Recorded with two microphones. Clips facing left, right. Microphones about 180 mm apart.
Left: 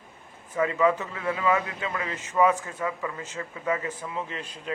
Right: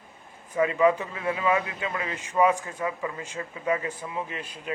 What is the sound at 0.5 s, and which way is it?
A man's voice, 20° right (ahead or behind).